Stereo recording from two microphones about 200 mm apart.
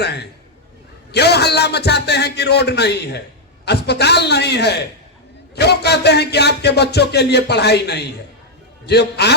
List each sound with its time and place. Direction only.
0.0 s speech: 55° left (ahead or behind)